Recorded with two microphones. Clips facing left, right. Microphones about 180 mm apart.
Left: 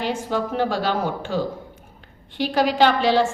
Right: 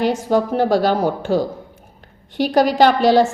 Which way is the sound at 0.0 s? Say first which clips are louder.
Right 7 dB; 40° right (ahead or behind).